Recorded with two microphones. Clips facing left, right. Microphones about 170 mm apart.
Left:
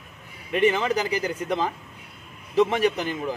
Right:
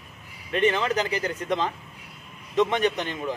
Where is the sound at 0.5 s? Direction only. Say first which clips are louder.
Left 1 dB; 10° left (ahead or behind).